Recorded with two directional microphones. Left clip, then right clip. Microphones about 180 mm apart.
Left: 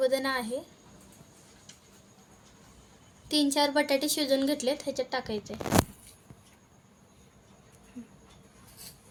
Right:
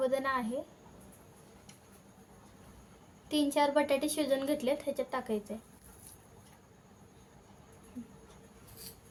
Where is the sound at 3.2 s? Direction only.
35° left (ahead or behind).